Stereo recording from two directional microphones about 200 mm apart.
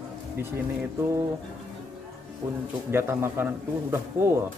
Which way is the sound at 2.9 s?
10° right (ahead or behind).